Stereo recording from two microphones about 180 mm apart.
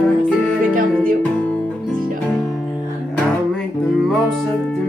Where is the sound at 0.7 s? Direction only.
50° right (ahead or behind).